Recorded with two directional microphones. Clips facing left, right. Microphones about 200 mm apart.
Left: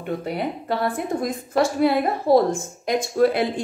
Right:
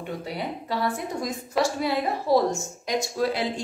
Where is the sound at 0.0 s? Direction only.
55° left (ahead or behind).